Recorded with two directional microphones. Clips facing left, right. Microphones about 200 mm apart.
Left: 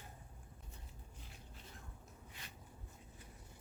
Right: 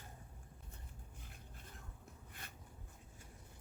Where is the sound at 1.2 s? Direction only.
50° right (ahead or behind).